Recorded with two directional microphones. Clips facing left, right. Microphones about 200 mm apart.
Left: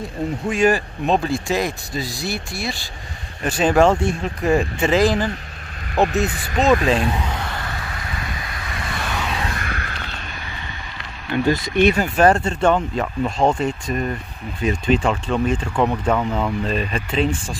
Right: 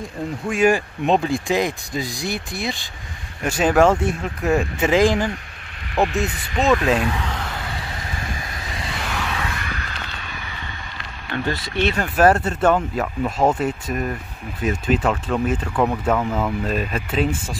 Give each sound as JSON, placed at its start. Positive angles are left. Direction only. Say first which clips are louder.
{"t": 0.5, "sound": "speech", "louder": "even", "side_deg": -10}
{"t": 5.9, "sound": "speech", "louder": "left 2 dB", "side_deg": 40}
{"t": 6.7, "sound": "speech", "louder": "left 1 dB", "side_deg": 0}
{"t": 7.0, "sound": "speech", "louder": "left 1 dB", "side_deg": 30}
{"t": 7.2, "sound": "sigh", "louder": "left 1 dB", "side_deg": 0}
{"t": 9.4, "sound": "a sound", "louder": "left 2 dB", "side_deg": 45}
{"t": 11.3, "sound": "speech", "louder": "left 6 dB", "side_deg": 15}
{"t": 12.2, "sound": "speech", "louder": "right 2 dB", "side_deg": -5}